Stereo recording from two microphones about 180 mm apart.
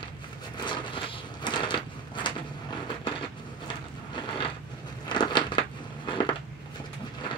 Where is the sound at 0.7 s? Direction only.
25° left (ahead or behind).